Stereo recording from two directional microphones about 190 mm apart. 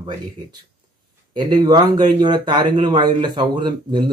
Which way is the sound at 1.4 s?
25° right (ahead or behind).